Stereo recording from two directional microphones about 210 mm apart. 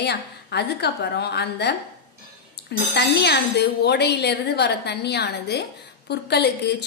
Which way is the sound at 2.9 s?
55° left (ahead or behind).